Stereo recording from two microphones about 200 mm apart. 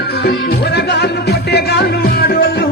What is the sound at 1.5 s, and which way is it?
Music, 55° left (ahead or behind).